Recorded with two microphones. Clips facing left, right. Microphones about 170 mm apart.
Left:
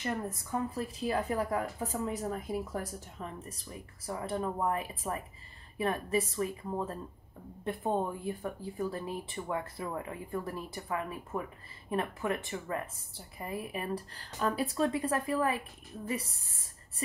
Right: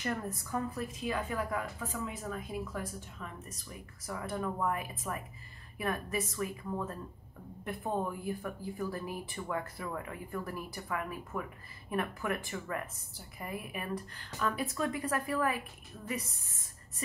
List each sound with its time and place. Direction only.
0.0 s a woman's voice: 20° left (ahead or behind)